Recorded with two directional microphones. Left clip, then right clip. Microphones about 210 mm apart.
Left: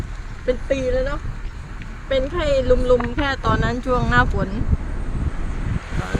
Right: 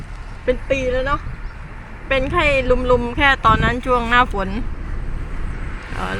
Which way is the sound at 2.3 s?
20° right (ahead or behind).